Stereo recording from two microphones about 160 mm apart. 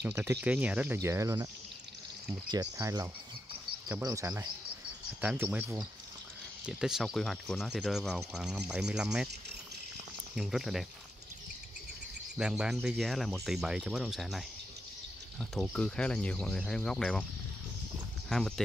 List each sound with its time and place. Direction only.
0.0 s speech: 15° right (ahead or behind)
2.8 s speech: 20° right (ahead or behind)
5.2 s speech: 10° right (ahead or behind)
10.3 s speech: 5° right (ahead or behind)
12.4 s speech: 5° right (ahead or behind)
15.5 s speech: 5° left (ahead or behind)
18.3 s speech: centre (ahead or behind)